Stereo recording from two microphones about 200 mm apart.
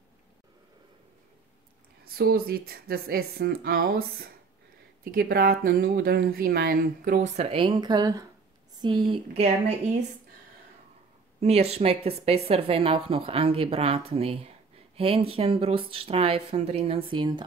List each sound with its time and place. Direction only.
2.1 s speech: 50° right (ahead or behind); by 9.5 s 30° right (ahead or behind)
11.3 s speech: 30° right (ahead or behind)